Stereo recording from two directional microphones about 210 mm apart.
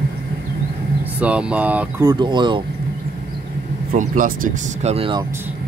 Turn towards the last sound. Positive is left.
turn(degrees=-25)  # may be behind; listen again after turning